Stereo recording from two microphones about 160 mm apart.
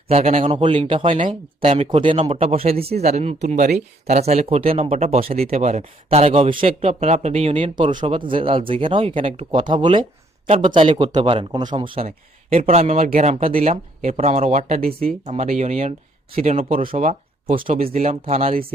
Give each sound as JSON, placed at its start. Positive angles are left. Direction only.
{"t": 0.1, "sound": "speech", "side_deg": -40}
{"t": 13.0, "sound": "speech", "side_deg": -55}
{"t": 16.4, "sound": "speech", "side_deg": -40}
{"t": 17.6, "sound": "speech", "side_deg": -60}
{"t": 17.8, "sound": "speech", "side_deg": -40}